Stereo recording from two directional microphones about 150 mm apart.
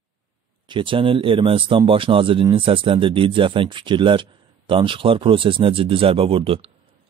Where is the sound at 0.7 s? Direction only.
35° right (ahead or behind).